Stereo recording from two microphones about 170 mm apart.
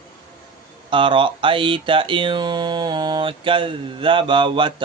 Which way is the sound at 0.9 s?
30° right (ahead or behind).